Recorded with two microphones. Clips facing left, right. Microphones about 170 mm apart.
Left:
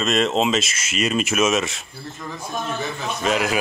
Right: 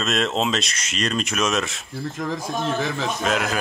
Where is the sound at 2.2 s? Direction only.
90° right.